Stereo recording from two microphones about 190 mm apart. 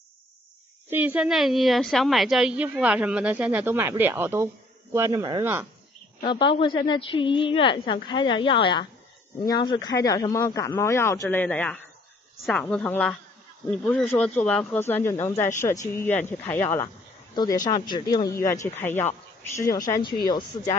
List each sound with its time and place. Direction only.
0.8 s a woman's voice: 10° right (ahead or behind)
6.2 s a woman's voice: 25° left (ahead or behind); by 16.8 s 10° left (ahead or behind)
17.6 s a woman's voice: 20° left (ahead or behind)